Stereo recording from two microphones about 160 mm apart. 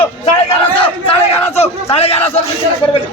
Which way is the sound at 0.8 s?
35° left (ahead or behind).